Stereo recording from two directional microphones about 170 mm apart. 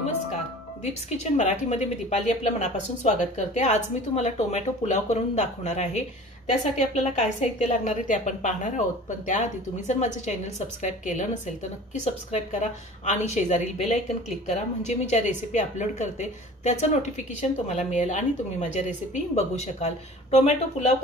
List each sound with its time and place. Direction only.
1.1 s a woman's voice: 45° left (ahead or behind)